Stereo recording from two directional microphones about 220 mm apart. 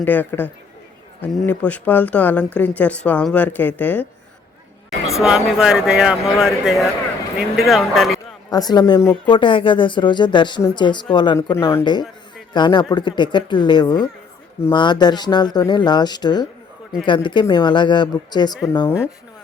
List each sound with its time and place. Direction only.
0.0 s speech: 10° left (ahead or behind)
5.1 s speech: centre (ahead or behind)
8.4 s speech: 15° left (ahead or behind)
9.3 s speech: 20° left (ahead or behind)